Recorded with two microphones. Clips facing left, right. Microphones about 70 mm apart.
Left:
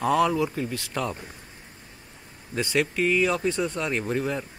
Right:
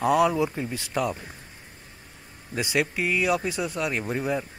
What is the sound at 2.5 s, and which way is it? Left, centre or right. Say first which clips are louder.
Speech: left 1 dB; centre.